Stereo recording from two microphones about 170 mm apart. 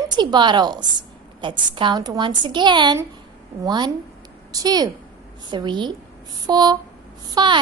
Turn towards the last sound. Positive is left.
turn(degrees=-30)  # may be behind; listen again after turning